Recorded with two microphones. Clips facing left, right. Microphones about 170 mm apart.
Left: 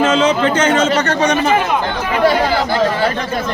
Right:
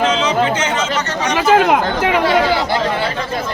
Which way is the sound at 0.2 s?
55° left (ahead or behind).